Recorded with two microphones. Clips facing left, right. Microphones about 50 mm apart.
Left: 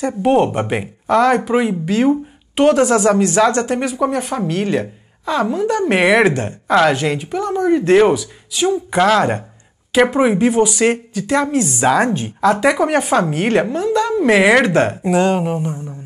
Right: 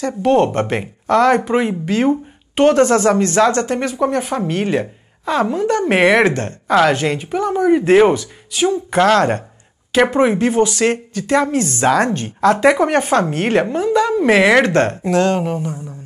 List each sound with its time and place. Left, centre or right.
0.0 s speech: centre
4.2 s speech: centre
11.1 s speech: centre
11.4 s speech: centre
13.1 s speech: centre
13.5 s speech: centre